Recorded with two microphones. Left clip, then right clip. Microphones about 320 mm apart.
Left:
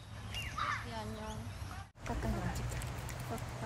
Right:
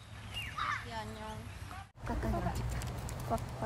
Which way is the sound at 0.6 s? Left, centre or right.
Centre.